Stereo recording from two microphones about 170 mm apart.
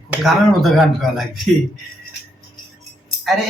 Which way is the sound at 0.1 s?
Centre (ahead or behind).